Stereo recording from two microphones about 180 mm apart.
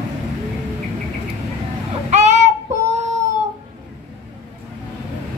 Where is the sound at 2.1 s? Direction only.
40° right (ahead or behind).